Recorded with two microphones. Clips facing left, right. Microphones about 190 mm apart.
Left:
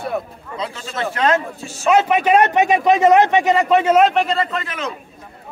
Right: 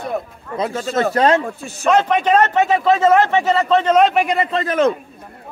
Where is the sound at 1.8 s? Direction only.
10° left (ahead or behind).